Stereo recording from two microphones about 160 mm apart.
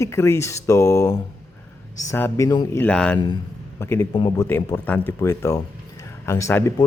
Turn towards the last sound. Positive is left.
turn(degrees=20)  # may be behind; listen again after turning